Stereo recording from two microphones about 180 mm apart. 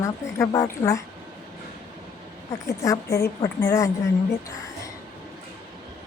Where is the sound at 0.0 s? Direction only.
15° left (ahead or behind).